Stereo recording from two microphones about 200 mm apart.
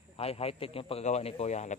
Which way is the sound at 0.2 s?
30° left (ahead or behind).